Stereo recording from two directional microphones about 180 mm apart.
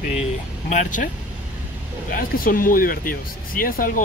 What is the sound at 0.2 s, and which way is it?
Speech, 40° left (ahead or behind).